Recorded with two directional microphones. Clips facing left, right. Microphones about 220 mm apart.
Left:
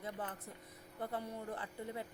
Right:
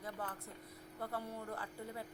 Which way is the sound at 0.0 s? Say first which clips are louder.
Left 1 dB; 20° left (ahead or behind).